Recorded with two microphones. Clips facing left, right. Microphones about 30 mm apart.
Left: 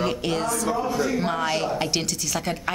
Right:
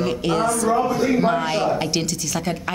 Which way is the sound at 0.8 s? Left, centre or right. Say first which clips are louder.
Right 4 dB; centre.